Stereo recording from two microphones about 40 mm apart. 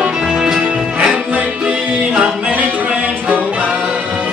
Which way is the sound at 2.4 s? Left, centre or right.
Right.